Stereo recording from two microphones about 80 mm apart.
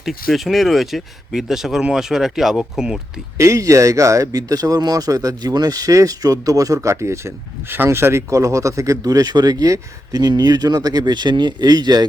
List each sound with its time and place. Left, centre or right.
0.0 s speech: centre
3.3 s speech: right
6.8 s speech: right